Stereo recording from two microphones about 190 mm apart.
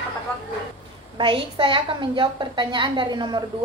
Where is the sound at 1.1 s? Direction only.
25° right (ahead or behind).